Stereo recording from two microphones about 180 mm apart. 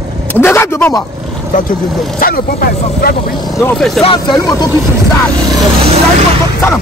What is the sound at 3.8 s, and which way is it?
Speech, centre (ahead or behind).